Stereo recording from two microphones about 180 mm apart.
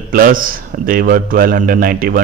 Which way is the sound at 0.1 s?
50° right (ahead or behind).